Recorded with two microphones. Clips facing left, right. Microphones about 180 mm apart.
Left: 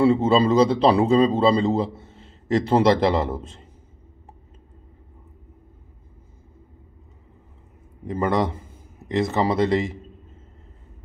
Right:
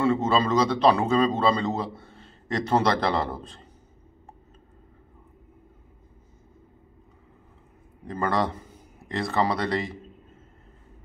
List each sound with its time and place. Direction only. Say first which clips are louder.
0.0 s a man's voice: left 5 dB; 30° left (ahead or behind)
8.1 s a man's voice: left 4 dB; 20° left (ahead or behind)